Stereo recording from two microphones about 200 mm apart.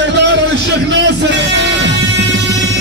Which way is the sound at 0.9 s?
60° right (ahead or behind).